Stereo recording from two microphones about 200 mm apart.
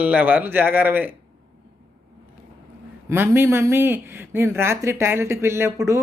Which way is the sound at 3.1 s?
10° right (ahead or behind).